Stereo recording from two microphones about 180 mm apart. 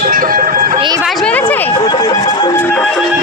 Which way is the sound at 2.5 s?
5° left (ahead or behind).